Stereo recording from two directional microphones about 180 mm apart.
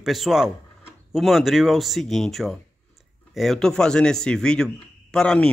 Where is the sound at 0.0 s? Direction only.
Centre (ahead or behind).